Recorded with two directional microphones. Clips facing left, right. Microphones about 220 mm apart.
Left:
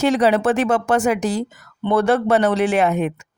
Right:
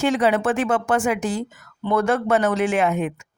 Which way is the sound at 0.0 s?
40° left (ahead or behind).